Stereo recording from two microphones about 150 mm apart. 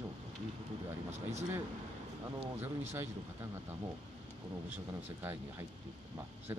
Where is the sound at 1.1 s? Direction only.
50° right (ahead or behind).